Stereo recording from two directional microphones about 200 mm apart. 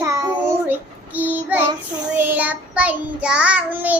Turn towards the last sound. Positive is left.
turn(degrees=-10)  # may be behind; listen again after turning